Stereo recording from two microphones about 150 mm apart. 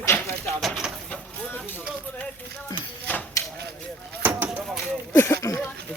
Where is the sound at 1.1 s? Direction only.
15° left (ahead or behind).